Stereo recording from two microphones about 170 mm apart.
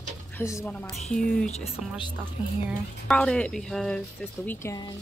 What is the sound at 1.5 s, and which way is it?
Speech, 30° left (ahead or behind).